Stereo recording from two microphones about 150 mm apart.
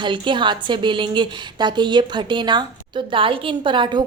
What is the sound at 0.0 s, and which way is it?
A woman's voice, 30° right (ahead or behind).